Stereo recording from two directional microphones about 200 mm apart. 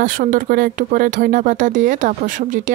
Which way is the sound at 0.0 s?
45° right (ahead or behind).